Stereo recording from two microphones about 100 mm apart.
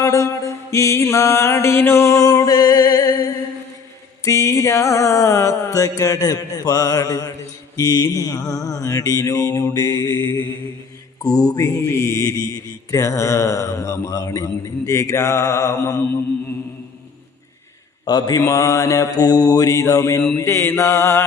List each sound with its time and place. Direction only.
0.0 s mantra: 30° left (ahead or behind)
4.2 s speech: 30° left (ahead or behind)
11.2 s speech: 40° left (ahead or behind)
18.0 s speech: 40° left (ahead or behind)
20.4 s mantra: 25° left (ahead or behind)